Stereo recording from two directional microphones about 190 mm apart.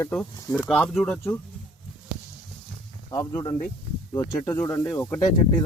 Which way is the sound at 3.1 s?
15° left (ahead or behind).